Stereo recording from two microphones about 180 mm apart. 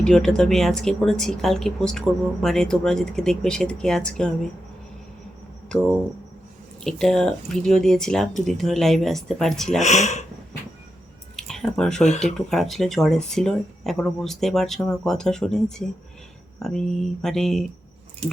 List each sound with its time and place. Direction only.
0.0 s speech: 5° left (ahead or behind)
5.6 s speech: 5° left (ahead or behind)
9.8 s speech: 40° left (ahead or behind)
11.3 s speech: centre (ahead or behind)